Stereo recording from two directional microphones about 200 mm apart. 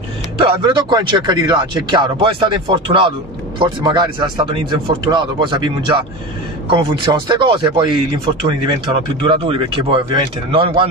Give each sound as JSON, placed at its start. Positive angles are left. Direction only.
{"t": 0.4, "sound": "speech", "side_deg": -25}
{"t": 9.2, "sound": "speech", "side_deg": -25}